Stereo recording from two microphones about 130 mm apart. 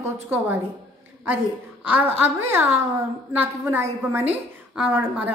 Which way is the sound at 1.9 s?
15° right (ahead or behind).